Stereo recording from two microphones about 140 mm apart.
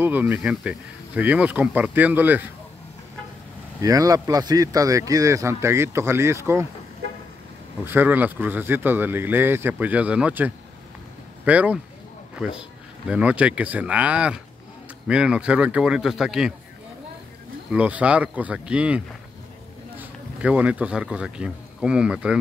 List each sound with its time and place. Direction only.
0.0 s speech: 10° right (ahead or behind)
3.8 s speech: 25° right (ahead or behind)
7.8 s a man's voice: 15° right (ahead or behind)
17.6 s speech: 10° right (ahead or behind)